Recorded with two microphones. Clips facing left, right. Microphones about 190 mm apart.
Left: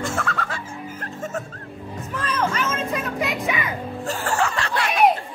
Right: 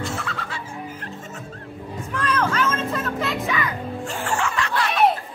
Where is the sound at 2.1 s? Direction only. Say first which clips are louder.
Right 2 dB; 5° left (ahead or behind).